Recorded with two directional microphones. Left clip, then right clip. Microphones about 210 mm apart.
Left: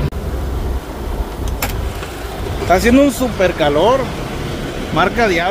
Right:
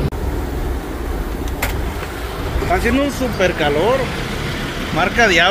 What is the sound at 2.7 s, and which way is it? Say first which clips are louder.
Speech: left 6 dB; 25° left (ahead or behind).